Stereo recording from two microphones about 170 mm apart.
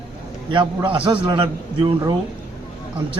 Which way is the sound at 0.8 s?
30° right (ahead or behind).